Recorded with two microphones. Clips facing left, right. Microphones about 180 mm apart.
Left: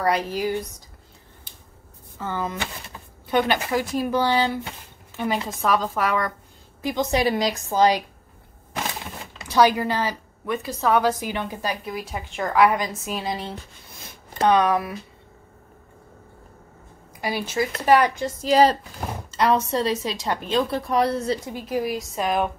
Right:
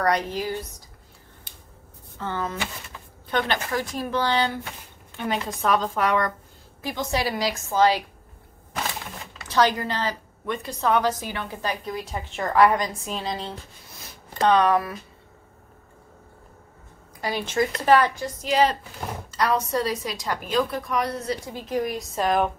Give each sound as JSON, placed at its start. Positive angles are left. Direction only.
{"t": 0.0, "sound": "a woman's voice", "side_deg": 10}
{"t": 2.1, "sound": "a woman's voice", "side_deg": 10}
{"t": 6.8, "sound": "a woman's voice", "side_deg": 20}
{"t": 9.5, "sound": "a woman's voice", "side_deg": 10}
{"t": 12.0, "sound": "a woman's voice", "side_deg": 0}
{"t": 17.2, "sound": "a woman's voice", "side_deg": 10}
{"t": 18.4, "sound": "speech", "side_deg": 35}
{"t": 19.3, "sound": "a woman's voice", "side_deg": 25}
{"t": 21.5, "sound": "a woman's voice", "side_deg": 10}